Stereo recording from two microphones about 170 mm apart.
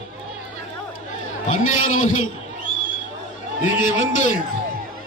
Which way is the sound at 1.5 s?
45° left (ahead or behind).